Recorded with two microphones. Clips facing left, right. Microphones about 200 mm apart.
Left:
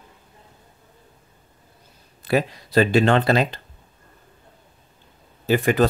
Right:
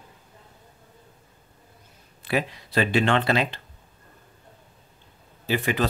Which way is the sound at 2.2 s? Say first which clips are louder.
Left 5 dB; 40° left (ahead or behind).